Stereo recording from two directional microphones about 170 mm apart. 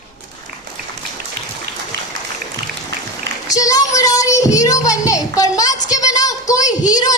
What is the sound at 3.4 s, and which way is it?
Child singing, 20° left (ahead or behind).